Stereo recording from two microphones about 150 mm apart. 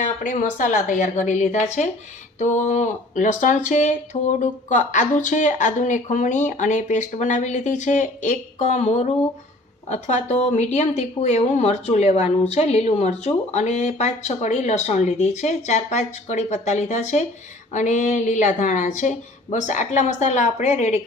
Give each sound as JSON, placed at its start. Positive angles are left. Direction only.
{"t": 0.0, "sound": "speech", "side_deg": 55}